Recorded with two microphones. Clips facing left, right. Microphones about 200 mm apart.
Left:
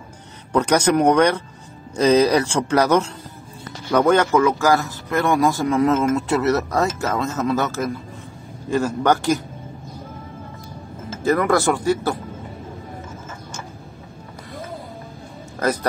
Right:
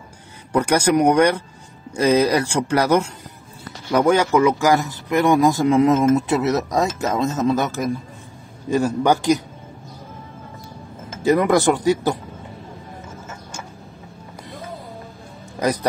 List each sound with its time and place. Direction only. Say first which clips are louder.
0.5 s a man's voice: even; 10° right (ahead or behind)
11.2 s a man's voice: right 2 dB; 15° right (ahead or behind)
15.6 s speech: right 1 dB; 10° right (ahead or behind)